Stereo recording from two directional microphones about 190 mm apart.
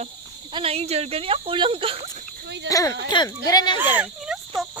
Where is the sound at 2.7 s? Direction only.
20° left (ahead or behind).